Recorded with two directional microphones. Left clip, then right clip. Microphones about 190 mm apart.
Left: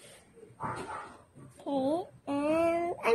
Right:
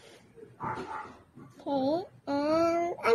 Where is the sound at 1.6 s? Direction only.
15° left (ahead or behind).